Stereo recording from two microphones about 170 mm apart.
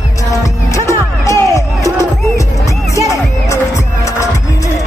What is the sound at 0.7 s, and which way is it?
Music, 15° left (ahead or behind).